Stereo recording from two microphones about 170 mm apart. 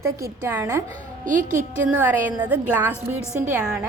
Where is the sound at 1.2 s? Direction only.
50° right (ahead or behind).